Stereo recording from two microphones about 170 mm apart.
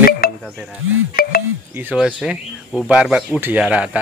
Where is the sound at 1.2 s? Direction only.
60° left (ahead or behind).